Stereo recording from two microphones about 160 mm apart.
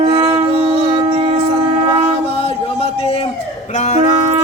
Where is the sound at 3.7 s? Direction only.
45° left (ahead or behind).